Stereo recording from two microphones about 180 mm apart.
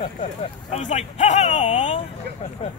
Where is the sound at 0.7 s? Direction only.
40° left (ahead or behind).